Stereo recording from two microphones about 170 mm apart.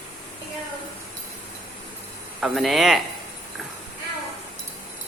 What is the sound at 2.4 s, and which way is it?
Speech, centre (ahead or behind).